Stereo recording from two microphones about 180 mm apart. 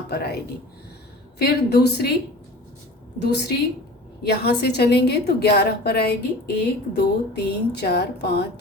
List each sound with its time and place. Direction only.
0.1 s speech: 65° left (ahead or behind)
1.4 s a woman's voice: 65° left (ahead or behind)
3.2 s a woman's voice: 65° left (ahead or behind)